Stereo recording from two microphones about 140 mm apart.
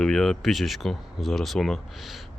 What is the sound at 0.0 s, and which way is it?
Speech, 5° left (ahead or behind).